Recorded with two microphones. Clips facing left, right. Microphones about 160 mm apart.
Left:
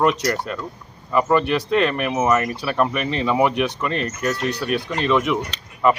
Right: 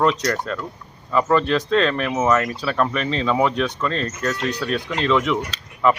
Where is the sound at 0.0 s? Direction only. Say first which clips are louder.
Even; 10° left (ahead or behind).